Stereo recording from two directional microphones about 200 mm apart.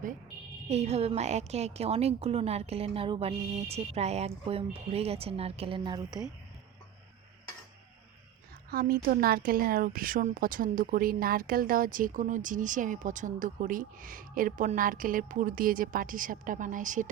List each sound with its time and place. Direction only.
0.7 s a woman's voice: 35° right (ahead or behind)
8.7 s a woman's voice: 50° right (ahead or behind)